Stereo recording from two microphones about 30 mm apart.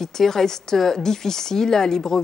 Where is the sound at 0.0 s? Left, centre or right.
Centre.